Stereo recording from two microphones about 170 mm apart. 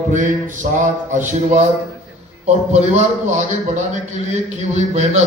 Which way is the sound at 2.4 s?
40° right (ahead or behind).